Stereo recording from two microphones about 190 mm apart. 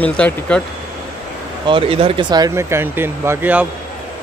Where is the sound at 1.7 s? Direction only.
30° right (ahead or behind).